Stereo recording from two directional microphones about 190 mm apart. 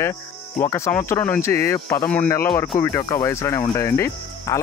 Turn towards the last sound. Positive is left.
turn(degrees=15)  # may be behind; listen again after turning